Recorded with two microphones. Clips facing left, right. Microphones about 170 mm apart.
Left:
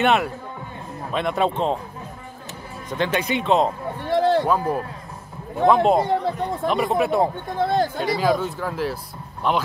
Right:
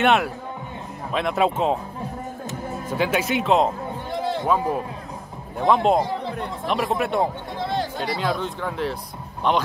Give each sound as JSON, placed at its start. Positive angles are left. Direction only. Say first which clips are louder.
{"t": 0.0, "sound": "speech", "louder": "even", "side_deg": 0}
{"t": 2.9, "sound": "speech", "louder": "even", "side_deg": -5}
{"t": 4.1, "sound": "run", "louder": "left 9 dB", "side_deg": 70}
{"t": 4.5, "sound": "speech", "louder": "even", "side_deg": 0}
{"t": 7.6, "sound": "speech", "louder": "left 6 dB", "side_deg": 45}
{"t": 8.0, "sound": "speech", "louder": "left 4 dB", "side_deg": 0}